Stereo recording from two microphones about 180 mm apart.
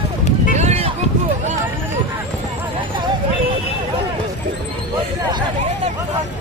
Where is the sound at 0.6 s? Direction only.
35° right (ahead or behind).